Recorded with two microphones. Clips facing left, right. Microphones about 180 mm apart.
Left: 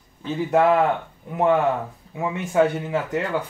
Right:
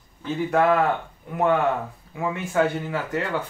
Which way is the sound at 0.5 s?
20° left (ahead or behind).